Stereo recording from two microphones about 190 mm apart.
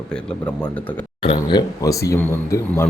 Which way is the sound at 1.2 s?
25° left (ahead or behind).